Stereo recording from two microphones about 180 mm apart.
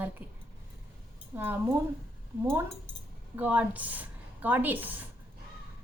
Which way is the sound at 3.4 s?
10° right (ahead or behind).